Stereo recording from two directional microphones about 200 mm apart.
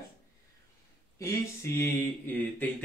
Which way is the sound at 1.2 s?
15° left (ahead or behind).